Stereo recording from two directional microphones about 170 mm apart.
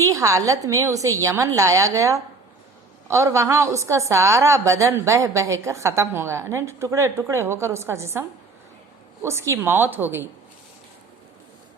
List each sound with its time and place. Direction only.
0.0 s a woman's voice: 20° right (ahead or behind)
9.5 s a woman's voice: 10° right (ahead or behind)